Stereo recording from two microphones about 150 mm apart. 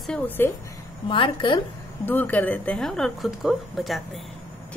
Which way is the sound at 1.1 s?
30° left (ahead or behind).